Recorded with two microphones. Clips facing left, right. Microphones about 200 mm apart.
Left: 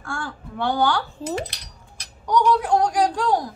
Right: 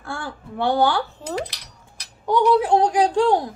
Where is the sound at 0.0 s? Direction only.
20° right (ahead or behind).